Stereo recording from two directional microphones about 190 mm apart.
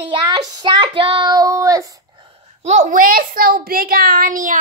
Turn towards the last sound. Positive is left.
turn(degrees=-45)  # may be behind; listen again after turning